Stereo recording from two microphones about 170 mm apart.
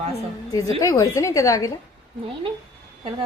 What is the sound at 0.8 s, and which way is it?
Speech, 20° left (ahead or behind).